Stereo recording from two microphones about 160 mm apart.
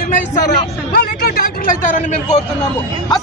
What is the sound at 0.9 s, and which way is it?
A man's voice, 80° left.